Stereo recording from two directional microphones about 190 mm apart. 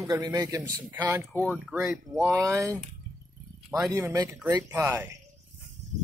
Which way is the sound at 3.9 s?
15° right (ahead or behind).